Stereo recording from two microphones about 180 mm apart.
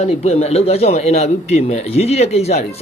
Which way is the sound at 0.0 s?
35° left (ahead or behind).